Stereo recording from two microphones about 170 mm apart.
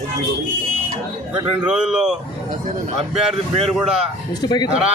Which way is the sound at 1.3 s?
5° right (ahead or behind).